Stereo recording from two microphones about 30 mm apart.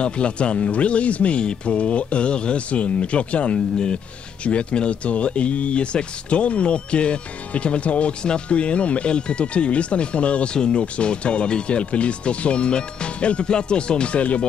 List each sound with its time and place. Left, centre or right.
0.0 s speech: left
3.5 s speech: left
10.5 s speech: left
14.1 s speech: left